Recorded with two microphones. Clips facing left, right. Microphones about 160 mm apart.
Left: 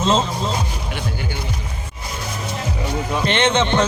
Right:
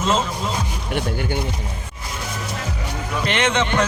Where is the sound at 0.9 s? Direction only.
55° right (ahead or behind).